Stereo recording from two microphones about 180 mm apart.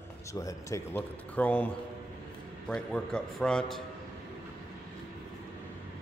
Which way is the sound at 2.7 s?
5° left (ahead or behind).